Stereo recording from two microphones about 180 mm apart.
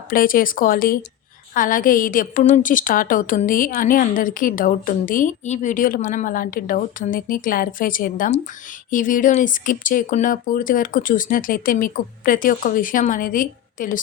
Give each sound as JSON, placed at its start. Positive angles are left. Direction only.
{"t": 0.1, "sound": "a woman's voice", "side_deg": 50}